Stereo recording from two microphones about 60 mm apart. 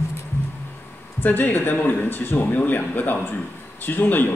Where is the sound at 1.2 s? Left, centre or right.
Left.